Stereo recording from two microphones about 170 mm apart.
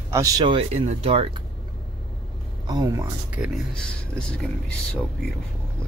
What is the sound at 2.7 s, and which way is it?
Speech, 25° right (ahead or behind).